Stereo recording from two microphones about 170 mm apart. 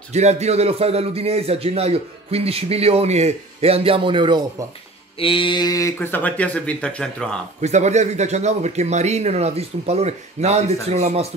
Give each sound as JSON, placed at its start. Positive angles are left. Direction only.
{"t": 0.1, "sound": "a man's voice", "side_deg": -40}
{"t": 5.2, "sound": "speech", "side_deg": 30}
{"t": 7.6, "sound": "a man's voice", "side_deg": -45}